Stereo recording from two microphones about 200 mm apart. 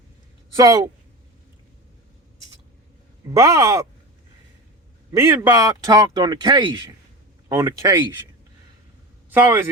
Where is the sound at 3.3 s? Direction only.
15° right (ahead or behind).